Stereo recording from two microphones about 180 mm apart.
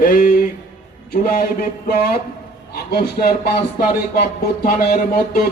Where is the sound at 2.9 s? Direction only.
55° left (ahead or behind).